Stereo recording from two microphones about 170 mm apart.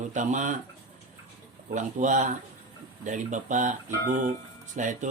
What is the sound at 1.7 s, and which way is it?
Speech, 45° right (ahead or behind).